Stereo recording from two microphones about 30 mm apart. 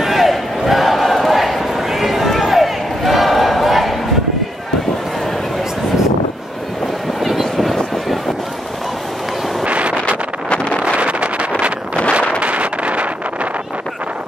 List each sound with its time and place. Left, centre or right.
0.0 s battle cry: centre
7.2 s vehicle: centre
9.7 s vehicle: right
10.5 s vehicle: left
11.0 s vehicle: right